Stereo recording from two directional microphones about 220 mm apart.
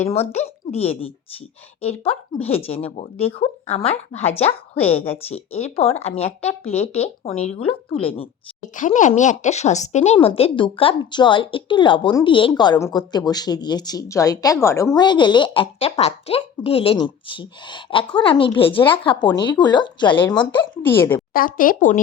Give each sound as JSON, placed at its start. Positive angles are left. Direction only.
{"t": 0.1, "sound": "a woman's voice", "side_deg": 30}
{"t": 20.8, "sound": "a woman's voice", "side_deg": 10}
{"t": 21.3, "sound": "speech", "side_deg": 40}